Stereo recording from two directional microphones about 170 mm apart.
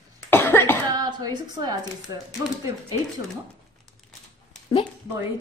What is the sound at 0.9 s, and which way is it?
Speech, 25° right (ahead or behind).